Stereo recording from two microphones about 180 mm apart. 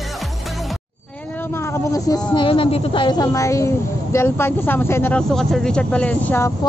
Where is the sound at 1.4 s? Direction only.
15° left (ahead or behind).